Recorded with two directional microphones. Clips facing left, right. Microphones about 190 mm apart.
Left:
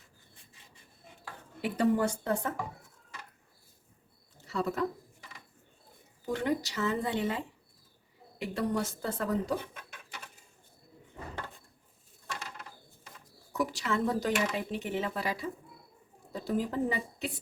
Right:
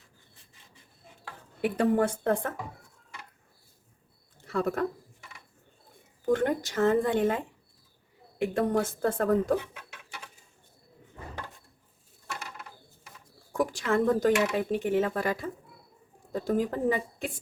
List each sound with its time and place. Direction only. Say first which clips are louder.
1.6 s a woman's voice: right 3 dB; 55° right (ahead or behind)
4.4 s speech: right 3 dB; 55° right (ahead or behind)
6.2 s speech: right 5 dB; 50° right (ahead or behind)
13.5 s speech: right 5 dB; 50° right (ahead or behind)